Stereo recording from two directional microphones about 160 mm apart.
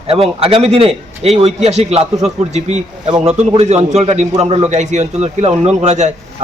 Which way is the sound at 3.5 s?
45° right (ahead or behind).